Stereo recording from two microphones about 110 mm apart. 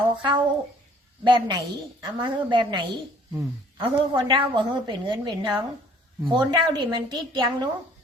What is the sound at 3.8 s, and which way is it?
A man's voice, 50° right (ahead or behind).